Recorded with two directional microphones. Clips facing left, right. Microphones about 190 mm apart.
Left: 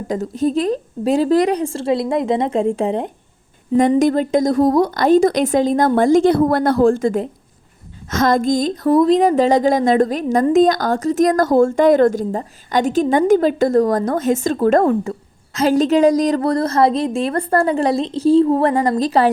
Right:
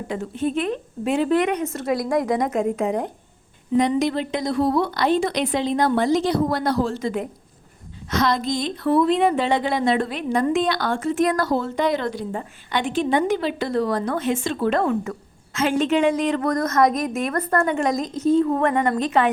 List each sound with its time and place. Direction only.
0.1 s a woman's voice: 40° left (ahead or behind)
3.8 s a woman's voice: 45° left (ahead or behind)